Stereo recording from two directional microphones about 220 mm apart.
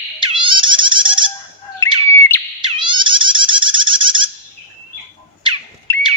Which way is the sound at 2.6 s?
20° right (ahead or behind).